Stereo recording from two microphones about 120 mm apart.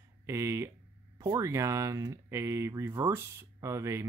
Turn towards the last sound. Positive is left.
turn(degrees=-25)  # may be behind; listen again after turning